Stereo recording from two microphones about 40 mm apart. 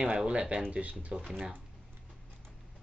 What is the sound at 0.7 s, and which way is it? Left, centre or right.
Speech, right.